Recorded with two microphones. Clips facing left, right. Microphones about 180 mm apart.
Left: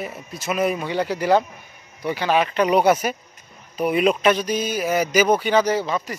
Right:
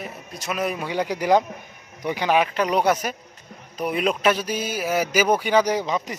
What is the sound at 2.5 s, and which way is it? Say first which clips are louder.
A man's voice: left 4 dB; 5° left (ahead or behind).